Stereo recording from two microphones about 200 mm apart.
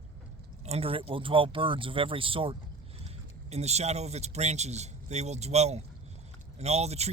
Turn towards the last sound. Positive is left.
turn(degrees=-30)  # may be behind; listen again after turning